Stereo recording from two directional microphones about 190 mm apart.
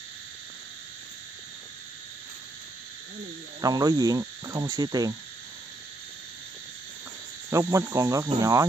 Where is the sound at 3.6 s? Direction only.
20° right (ahead or behind).